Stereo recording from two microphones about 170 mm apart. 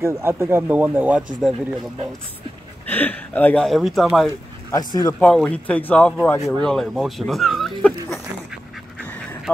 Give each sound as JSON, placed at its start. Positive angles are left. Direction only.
{"t": 0.0, "sound": "speech", "side_deg": -15}
{"t": 2.9, "sound": "speech", "side_deg": 10}
{"t": 4.3, "sound": "speech", "side_deg": 20}
{"t": 5.2, "sound": "speech", "side_deg": 5}